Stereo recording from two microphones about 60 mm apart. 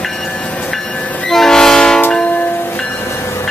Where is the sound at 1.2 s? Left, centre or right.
Centre.